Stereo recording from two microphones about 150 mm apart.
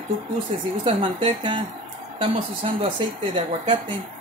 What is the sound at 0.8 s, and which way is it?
Speech, 35° right (ahead or behind).